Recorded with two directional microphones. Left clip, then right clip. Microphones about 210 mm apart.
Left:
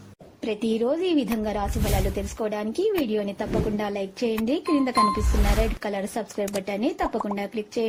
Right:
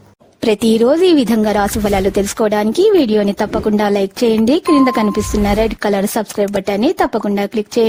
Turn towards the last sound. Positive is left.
turn(degrees=-55)  # may be behind; listen again after turning